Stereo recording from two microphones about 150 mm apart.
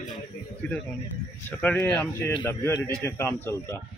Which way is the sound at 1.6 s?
10° left (ahead or behind).